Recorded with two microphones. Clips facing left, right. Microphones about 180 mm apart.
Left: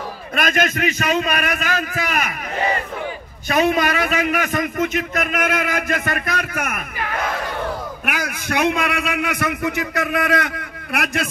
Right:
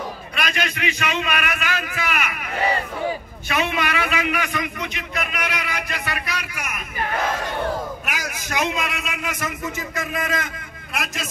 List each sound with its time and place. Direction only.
0.4 s a man's voice: 45° left (ahead or behind)
3.4 s a man's voice: 40° left (ahead or behind)
8.0 s a man's voice: 55° left (ahead or behind)